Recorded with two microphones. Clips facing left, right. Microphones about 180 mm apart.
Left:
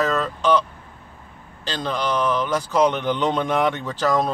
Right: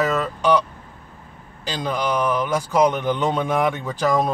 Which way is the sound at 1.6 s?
10° right (ahead or behind).